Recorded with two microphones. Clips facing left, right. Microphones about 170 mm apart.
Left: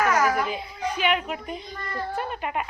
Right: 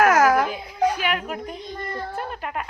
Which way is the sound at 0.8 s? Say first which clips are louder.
Right 10 dB; 55° right (ahead or behind).